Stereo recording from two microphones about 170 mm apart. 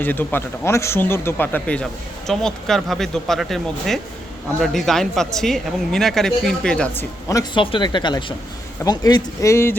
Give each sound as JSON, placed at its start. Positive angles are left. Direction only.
{"t": 0.0, "sound": "speech", "side_deg": 10}
{"t": 7.3, "sound": "speech", "side_deg": 20}